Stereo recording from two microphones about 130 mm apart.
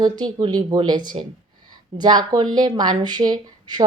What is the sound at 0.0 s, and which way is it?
Speech, 30° right (ahead or behind).